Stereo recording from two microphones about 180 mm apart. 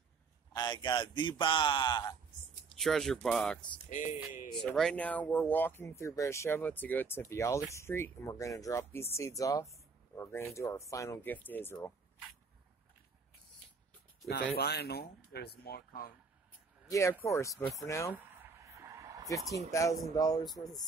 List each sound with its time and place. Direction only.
0.5 s speech: 25° left (ahead or behind)
2.8 s speech: centre (ahead or behind)
3.9 s speech: 45° left (ahead or behind)
4.6 s speech: 5° left (ahead or behind)
14.5 s speech: 60° left (ahead or behind)
16.9 s speech: 15° left (ahead or behind)
18.1 s a sound: 15° right (ahead or behind)
19.7 s speech: 15° left (ahead or behind)